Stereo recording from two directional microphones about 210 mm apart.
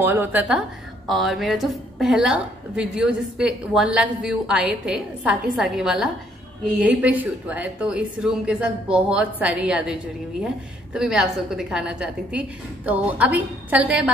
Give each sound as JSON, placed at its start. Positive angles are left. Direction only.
{"t": 0.0, "sound": "a woman's voice", "side_deg": -10}